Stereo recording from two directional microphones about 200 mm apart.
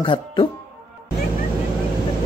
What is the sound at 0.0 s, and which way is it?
Speech, 25° left (ahead or behind).